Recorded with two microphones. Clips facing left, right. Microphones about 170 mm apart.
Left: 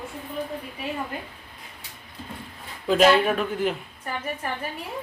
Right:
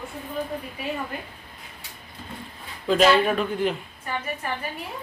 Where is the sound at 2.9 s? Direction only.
5° left (ahead or behind).